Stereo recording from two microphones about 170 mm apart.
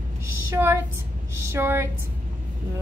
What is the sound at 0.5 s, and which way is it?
A woman's voice, 15° right (ahead or behind).